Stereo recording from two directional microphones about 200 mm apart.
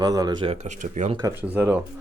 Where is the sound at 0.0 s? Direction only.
20° right (ahead or behind); by 1.1 s 40° right (ahead or behind).